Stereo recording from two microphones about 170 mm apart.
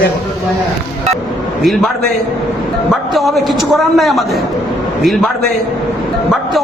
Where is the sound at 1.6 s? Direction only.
Centre (ahead or behind).